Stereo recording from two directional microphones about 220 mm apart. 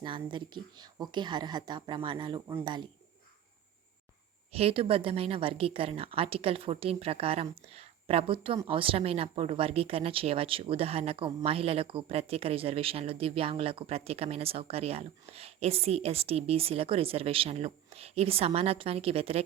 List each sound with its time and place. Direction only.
0.0 s a woman's voice: 20° right (ahead or behind)
2.5 s speech: 10° right (ahead or behind)
4.5 s a woman's voice: 25° right (ahead or behind)